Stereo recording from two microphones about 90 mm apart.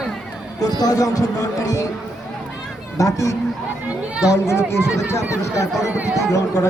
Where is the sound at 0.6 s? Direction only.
45° left (ahead or behind).